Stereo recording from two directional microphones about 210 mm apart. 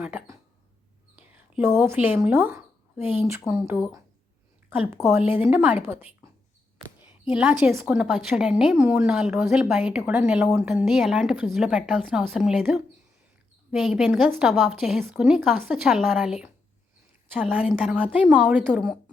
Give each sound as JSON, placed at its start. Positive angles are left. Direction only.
{"t": 0.0, "sound": "speech", "side_deg": -10}
{"t": 1.5, "sound": "a woman's voice", "side_deg": -10}